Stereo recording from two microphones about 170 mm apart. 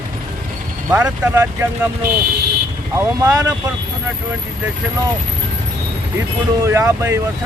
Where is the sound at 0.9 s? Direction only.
10° right (ahead or behind).